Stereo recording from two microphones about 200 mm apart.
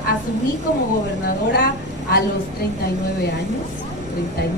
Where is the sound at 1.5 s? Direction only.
50° left (ahead or behind).